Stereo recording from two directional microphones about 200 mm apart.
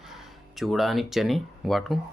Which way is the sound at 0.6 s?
Centre (ahead or behind).